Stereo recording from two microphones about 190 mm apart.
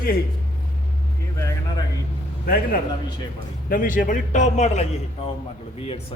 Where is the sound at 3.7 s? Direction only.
45° left (ahead or behind).